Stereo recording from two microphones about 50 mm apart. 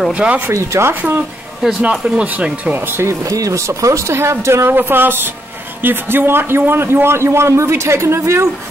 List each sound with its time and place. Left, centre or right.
0.1 s speech: right
0.5 s speech: right
1.8 s speech: right
2.6 s speech: right
3.0 s speech: right
4.7 s a sound: right
5.8 s a man's voice: right